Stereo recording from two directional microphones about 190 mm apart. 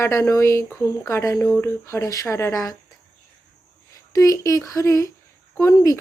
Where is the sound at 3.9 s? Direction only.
15° left (ahead or behind).